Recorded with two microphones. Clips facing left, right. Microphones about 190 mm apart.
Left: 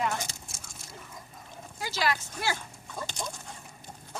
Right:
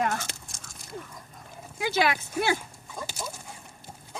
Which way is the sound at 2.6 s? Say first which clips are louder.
Even; 5° right (ahead or behind).